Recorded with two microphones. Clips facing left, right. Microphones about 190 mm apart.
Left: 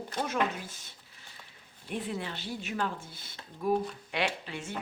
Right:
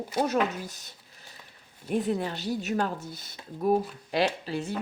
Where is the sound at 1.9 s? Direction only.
40° right (ahead or behind).